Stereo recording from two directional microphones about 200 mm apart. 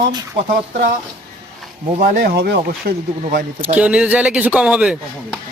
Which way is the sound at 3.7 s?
5° right (ahead or behind).